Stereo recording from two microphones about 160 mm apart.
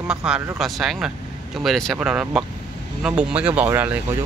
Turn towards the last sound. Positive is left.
turn(degrees=-10)  # may be behind; listen again after turning